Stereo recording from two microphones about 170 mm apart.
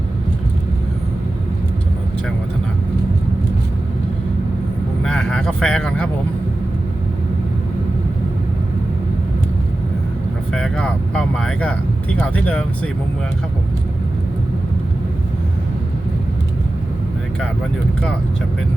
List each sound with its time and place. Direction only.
5.0 s speech: 5° left (ahead or behind)
10.5 s speech: 5° left (ahead or behind)